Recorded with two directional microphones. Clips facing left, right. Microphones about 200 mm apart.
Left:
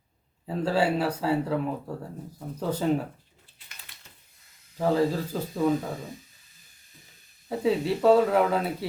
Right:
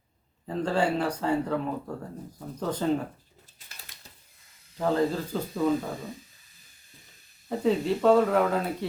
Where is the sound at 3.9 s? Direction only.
45° right (ahead or behind).